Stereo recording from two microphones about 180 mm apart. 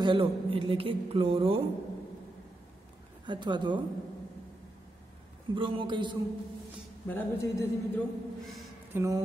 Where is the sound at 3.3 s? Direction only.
25° right (ahead or behind).